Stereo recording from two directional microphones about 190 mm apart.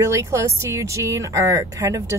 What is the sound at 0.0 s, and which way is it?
A woman's voice, 15° right (ahead or behind).